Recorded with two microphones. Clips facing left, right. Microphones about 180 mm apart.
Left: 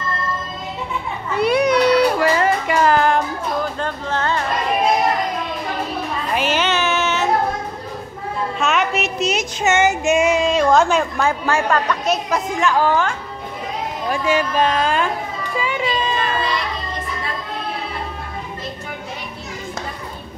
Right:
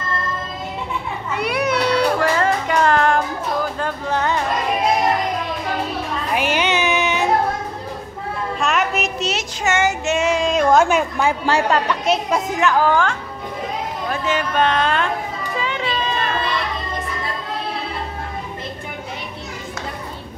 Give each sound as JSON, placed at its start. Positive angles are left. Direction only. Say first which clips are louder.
{"t": 1.4, "sound": "child singing", "louder": "left 5 dB", "side_deg": 20}
{"t": 3.8, "sound": "music", "louder": "right 1 dB", "side_deg": -15}
{"t": 6.3, "sound": "a sound", "louder": "even", "side_deg": -15}
{"t": 8.5, "sound": "a sound", "louder": "left 1 dB", "side_deg": 0}
{"t": 9.2, "sound": "child singing", "louder": "left 3 dB", "side_deg": 15}
{"t": 11.4, "sound": "speech", "louder": "right 1 dB", "side_deg": -25}
{"t": 12.3, "sound": "speech", "louder": "right 1 dB", "side_deg": -5}
{"t": 14.1, "sound": "speech", "louder": "left 2 dB", "side_deg": 10}